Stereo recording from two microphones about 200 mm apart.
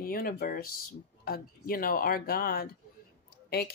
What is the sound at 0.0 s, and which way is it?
Speech, 45° left (ahead or behind).